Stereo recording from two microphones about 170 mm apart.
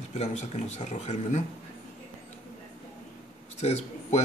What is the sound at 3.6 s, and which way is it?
Speech, 40° left (ahead or behind).